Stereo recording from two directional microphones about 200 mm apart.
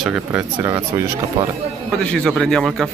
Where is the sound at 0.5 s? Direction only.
20° right (ahead or behind).